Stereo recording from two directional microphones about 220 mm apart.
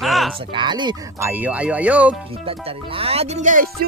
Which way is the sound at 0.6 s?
20° right (ahead or behind).